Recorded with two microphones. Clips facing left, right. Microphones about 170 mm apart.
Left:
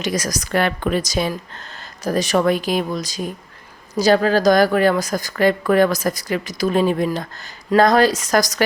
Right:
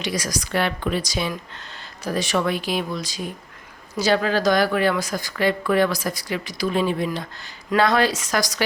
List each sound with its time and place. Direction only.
0.0 s a woman's voice: 45° left (ahead or behind)